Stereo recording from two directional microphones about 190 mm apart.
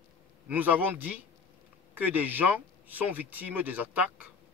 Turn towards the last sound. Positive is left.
turn(degrees=-10)  # may be behind; listen again after turning